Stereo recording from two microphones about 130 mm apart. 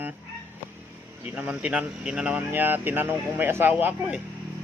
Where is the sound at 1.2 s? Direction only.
10° right (ahead or behind).